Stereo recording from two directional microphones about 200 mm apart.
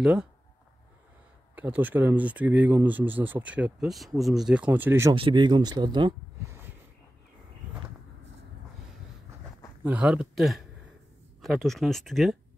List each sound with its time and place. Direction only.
0.0 s speech: 5° right (ahead or behind)
1.5 s speech: 10° right (ahead or behind)
5.1 s speech: 25° right (ahead or behind)
9.8 s speech: 5° right (ahead or behind)